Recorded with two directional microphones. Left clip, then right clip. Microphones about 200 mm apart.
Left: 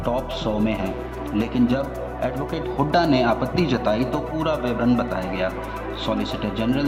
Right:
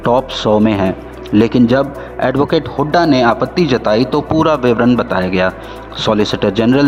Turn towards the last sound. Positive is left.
turn(degrees=-55)  # may be behind; listen again after turning